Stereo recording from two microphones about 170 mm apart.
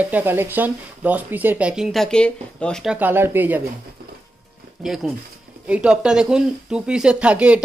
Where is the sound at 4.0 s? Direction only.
65° right (ahead or behind).